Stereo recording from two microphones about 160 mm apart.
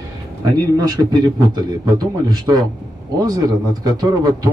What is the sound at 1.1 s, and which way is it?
A man's voice, 25° right (ahead or behind).